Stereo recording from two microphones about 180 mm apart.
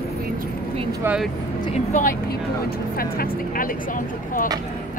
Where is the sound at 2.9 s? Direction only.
55° left (ahead or behind).